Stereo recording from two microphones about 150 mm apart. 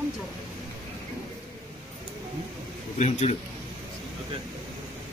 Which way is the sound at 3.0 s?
45° left (ahead or behind).